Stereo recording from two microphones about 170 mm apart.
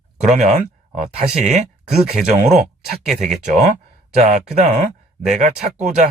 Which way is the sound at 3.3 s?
45° right (ahead or behind).